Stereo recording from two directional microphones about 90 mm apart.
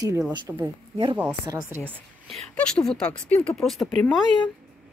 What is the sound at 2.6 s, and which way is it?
Speech, 5° left (ahead or behind).